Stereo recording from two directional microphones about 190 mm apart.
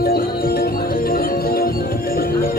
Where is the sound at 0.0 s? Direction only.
55° left (ahead or behind).